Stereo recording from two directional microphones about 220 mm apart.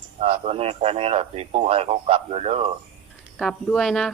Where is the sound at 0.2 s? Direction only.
25° right (ahead or behind).